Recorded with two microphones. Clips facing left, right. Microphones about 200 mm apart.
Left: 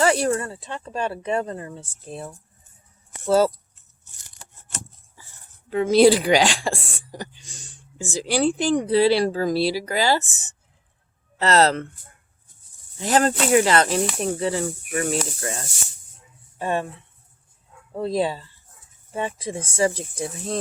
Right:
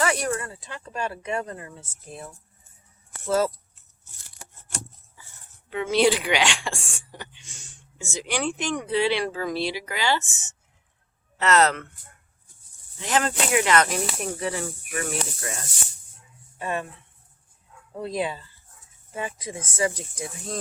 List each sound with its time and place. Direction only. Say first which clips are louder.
0.0 s speech: left 5 dB; 30° left (ahead or behind)
5.7 s speech: left 6 dB; 35° left (ahead or behind)
13.0 s speech: left 5 dB; 40° left (ahead or behind)
17.9 s speech: left 5 dB; 30° left (ahead or behind)